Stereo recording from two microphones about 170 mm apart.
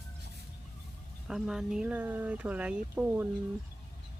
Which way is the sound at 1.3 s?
Centre (ahead or behind).